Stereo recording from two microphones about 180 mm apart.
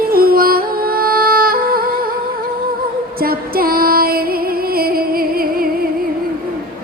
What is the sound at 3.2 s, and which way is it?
Music, 55° right (ahead or behind).